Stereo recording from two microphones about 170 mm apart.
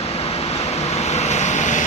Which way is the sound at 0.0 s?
35° left (ahead or behind).